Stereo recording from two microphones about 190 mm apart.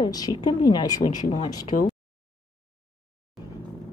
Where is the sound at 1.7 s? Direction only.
50° left (ahead or behind).